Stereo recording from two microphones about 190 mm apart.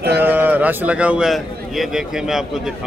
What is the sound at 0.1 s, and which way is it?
A man's voice, 10° right (ahead or behind).